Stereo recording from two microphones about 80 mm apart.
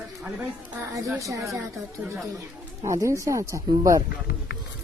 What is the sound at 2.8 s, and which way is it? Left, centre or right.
Speech, right.